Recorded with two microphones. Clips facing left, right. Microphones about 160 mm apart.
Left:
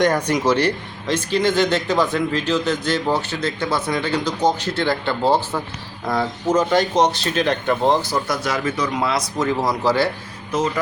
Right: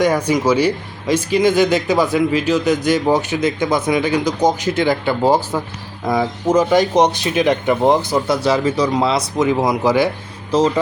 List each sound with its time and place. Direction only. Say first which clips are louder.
0.3 s speech: right 3 dB; 5° right (ahead or behind); by 9.0 s 35° right (ahead or behind)
9.0 s speech: right 4 dB; 20° right (ahead or behind)
10.5 s speech: right 6 dB; 35° right (ahead or behind)